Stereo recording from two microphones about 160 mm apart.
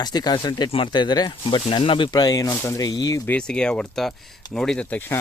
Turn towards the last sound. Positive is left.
turn(degrees=10)  # may be behind; listen again after turning